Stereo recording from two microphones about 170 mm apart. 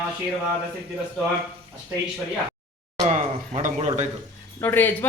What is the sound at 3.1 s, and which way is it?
Speech, 45° right (ahead or behind).